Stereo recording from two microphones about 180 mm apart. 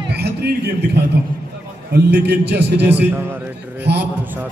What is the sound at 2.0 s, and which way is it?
A man's voice, 70° right (ahead or behind).